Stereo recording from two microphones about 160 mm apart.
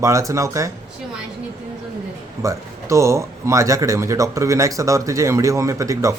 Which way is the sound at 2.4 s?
20° right (ahead or behind).